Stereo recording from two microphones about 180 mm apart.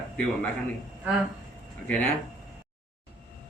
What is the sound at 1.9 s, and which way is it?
Speech, 10° left (ahead or behind).